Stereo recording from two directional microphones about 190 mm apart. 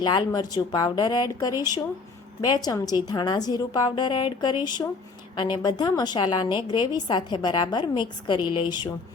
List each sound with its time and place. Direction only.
0.0 s a woman's voice: 25° left (ahead or behind)